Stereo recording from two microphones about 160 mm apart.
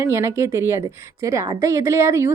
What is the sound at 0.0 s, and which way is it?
A woman's voice, 20° right (ahead or behind).